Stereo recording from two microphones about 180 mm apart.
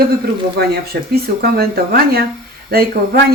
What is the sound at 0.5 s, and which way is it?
Speech, 60° right (ahead or behind).